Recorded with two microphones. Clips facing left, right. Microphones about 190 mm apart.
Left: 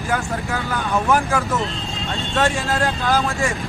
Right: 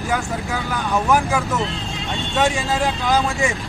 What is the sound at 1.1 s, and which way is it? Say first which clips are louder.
Speech: right 1 dB; 5° right (ahead or behind).